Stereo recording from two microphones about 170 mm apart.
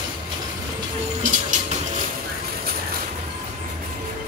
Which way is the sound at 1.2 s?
45° right (ahead or behind).